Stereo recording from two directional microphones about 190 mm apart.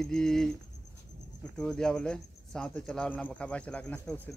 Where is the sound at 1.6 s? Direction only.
5° left (ahead or behind).